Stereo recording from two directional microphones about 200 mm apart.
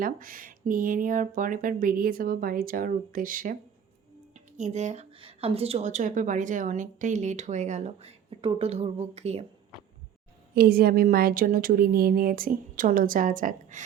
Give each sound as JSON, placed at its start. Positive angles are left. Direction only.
{"t": 0.0, "sound": "a woman's voice", "side_deg": -45}
{"t": 10.5, "sound": "speech", "side_deg": -50}